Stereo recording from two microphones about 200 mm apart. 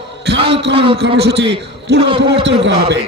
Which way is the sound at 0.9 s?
55° right (ahead or behind).